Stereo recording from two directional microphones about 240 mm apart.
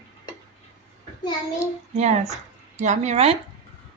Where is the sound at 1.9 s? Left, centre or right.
Right.